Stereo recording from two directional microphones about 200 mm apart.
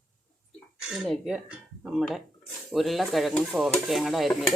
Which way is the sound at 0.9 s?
Centre (ahead or behind).